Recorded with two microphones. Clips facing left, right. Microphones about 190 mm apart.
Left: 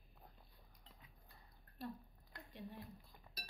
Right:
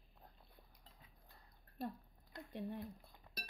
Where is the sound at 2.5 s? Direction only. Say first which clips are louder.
Right 8 dB; 55° right (ahead or behind).